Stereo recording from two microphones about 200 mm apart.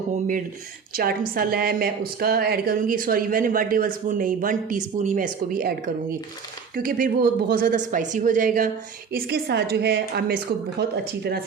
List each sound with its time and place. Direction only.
0.9 s a woman's voice: 45° right (ahead or behind)